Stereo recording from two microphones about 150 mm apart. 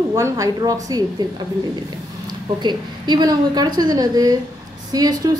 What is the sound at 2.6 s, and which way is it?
A woman's voice, 30° right (ahead or behind).